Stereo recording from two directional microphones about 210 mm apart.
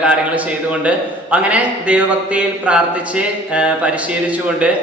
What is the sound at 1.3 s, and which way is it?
Speech, 5° right (ahead or behind).